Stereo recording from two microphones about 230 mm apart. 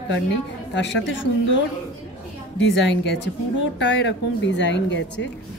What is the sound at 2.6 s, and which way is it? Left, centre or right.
A woman's voice, left.